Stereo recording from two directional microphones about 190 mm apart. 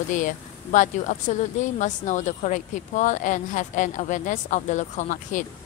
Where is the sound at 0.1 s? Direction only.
40° left (ahead or behind).